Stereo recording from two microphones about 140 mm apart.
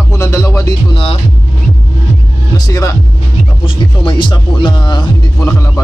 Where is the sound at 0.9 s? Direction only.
40° left (ahead or behind).